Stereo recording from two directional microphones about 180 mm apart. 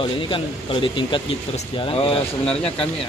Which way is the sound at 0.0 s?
30° left (ahead or behind).